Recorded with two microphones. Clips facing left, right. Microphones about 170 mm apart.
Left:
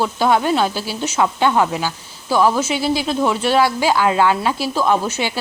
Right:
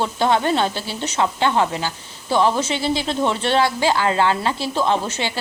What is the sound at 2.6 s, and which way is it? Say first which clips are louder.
Speech: left 2 dB; 5° left (ahead or behind).